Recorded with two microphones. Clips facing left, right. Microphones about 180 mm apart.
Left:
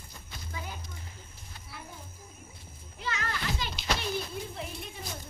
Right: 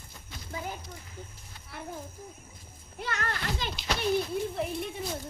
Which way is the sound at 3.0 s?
55° right (ahead or behind).